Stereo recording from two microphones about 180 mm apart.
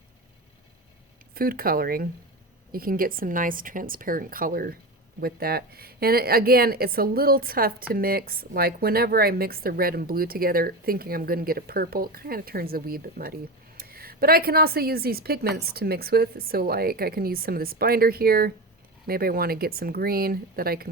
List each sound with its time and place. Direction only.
1.3 s a woman's voice: 55° right (ahead or behind)